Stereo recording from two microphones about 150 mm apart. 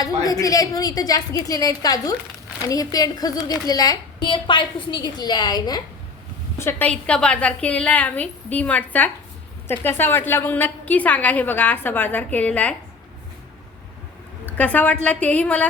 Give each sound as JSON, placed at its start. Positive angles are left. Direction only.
{"t": 0.0, "sound": "a woman's voice", "side_deg": 25}
{"t": 6.6, "sound": "a woman's voice", "side_deg": 15}
{"t": 14.4, "sound": "a woman's voice", "side_deg": 10}